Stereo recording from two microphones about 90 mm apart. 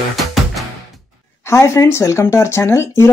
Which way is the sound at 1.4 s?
30° left (ahead or behind).